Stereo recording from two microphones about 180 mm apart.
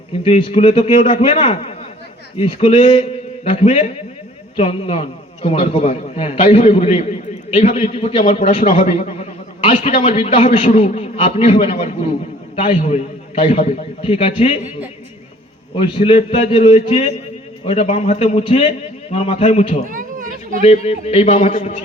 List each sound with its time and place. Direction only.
0.3 s a man's voice: 35° left (ahead or behind)
8.4 s a man's voice: 45° left (ahead or behind)
15.7 s a man's voice: 30° left (ahead or behind)
19.9 s a sound: 50° right (ahead or behind)
20.7 s a man's voice: 35° left (ahead or behind)